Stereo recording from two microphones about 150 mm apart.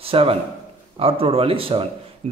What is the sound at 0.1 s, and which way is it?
Speech, 40° right (ahead or behind).